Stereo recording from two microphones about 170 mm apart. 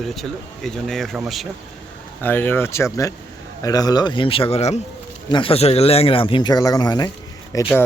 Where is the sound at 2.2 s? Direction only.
10° left (ahead or behind).